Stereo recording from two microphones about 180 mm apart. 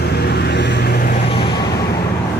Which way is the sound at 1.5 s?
65° left (ahead or behind).